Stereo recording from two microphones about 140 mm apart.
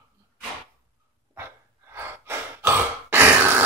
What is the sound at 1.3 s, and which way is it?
Sigh, 15° right (ahead or behind).